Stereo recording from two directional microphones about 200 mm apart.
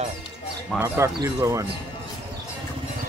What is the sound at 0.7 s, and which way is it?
Speech, 15° right (ahead or behind).